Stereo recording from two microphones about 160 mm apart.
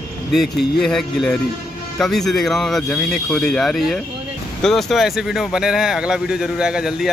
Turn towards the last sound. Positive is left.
turn(degrees=-5)  # may be behind; listen again after turning